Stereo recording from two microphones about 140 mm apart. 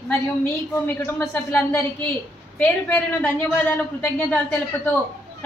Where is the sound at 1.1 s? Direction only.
15° left (ahead or behind).